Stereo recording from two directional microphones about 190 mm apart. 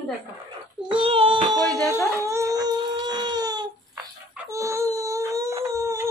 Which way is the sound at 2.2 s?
15° right (ahead or behind).